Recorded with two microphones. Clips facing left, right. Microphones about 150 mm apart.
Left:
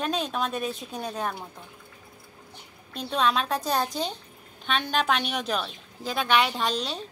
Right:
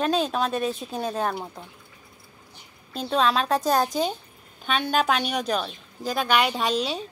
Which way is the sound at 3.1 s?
Centre (ahead or behind).